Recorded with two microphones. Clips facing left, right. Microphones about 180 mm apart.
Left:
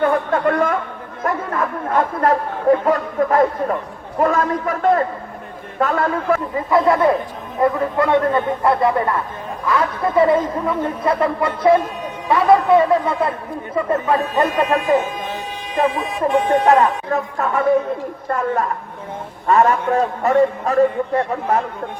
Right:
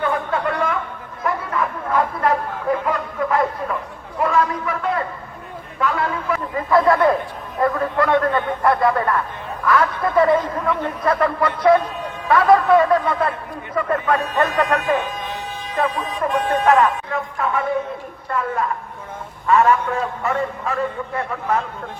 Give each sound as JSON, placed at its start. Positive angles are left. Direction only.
{"t": 0.0, "sound": "a sound", "side_deg": 45}
{"t": 1.2, "sound": "chatter", "side_deg": 45}
{"t": 4.2, "sound": "a man's voice", "side_deg": 45}
{"t": 6.7, "sound": "a man's voice", "side_deg": 20}
{"t": 15.7, "sound": "a man's voice", "side_deg": 15}
{"t": 16.6, "sound": "a man's voice", "side_deg": 35}